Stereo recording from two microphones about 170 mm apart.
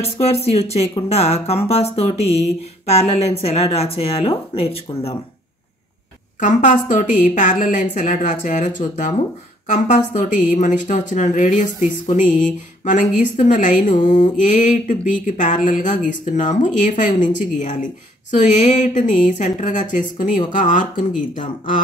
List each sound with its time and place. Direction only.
0.0 s speech: 35° left (ahead or behind)
6.4 s speech: 45° left (ahead or behind)